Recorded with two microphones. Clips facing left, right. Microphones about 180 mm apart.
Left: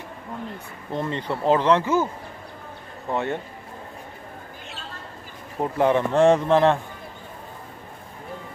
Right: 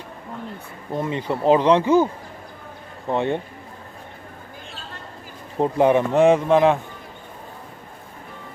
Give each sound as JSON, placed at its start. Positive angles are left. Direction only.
{"t": 0.9, "sound": "speech", "side_deg": -10}
{"t": 3.1, "sound": "speech", "side_deg": -20}
{"t": 5.6, "sound": "speech", "side_deg": -15}
{"t": 6.2, "sound": "speech", "side_deg": -5}